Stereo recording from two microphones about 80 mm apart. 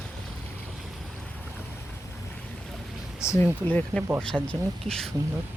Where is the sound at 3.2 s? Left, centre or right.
Left.